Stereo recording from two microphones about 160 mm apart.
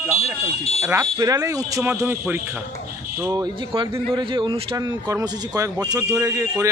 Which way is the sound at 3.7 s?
35° right (ahead or behind).